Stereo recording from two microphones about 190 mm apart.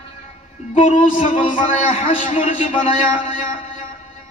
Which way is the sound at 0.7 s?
40° left (ahead or behind).